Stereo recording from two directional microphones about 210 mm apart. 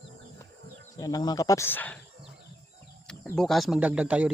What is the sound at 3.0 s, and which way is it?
Speech, centre (ahead or behind).